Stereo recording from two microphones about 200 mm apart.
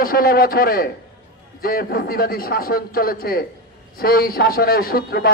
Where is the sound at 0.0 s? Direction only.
45° left (ahead or behind).